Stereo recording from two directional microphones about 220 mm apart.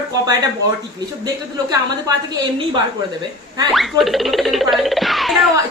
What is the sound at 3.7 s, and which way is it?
Music, centre (ahead or behind).